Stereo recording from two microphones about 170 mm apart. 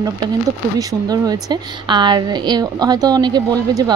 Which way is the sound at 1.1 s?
25° right (ahead or behind).